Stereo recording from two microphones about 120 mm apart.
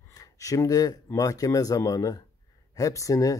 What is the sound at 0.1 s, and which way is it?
Speech, 30° left (ahead or behind).